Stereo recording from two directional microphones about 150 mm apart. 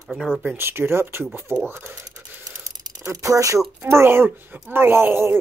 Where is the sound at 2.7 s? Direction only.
20° right (ahead or behind).